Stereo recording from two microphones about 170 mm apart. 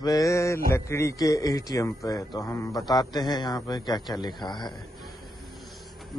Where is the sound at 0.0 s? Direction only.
20° left (ahead or behind).